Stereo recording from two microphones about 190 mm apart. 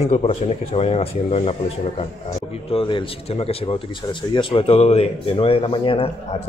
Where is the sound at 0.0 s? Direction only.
35° left (ahead or behind).